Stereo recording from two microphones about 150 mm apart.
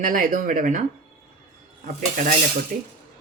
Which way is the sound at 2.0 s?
65° right (ahead or behind).